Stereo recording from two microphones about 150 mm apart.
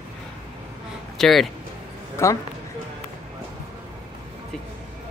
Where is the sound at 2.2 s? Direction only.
20° left (ahead or behind).